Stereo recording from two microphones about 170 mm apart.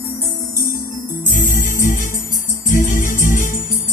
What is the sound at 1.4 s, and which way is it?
Music, 50° left (ahead or behind).